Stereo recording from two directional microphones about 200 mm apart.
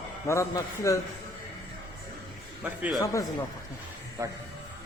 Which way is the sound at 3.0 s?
15° left (ahead or behind).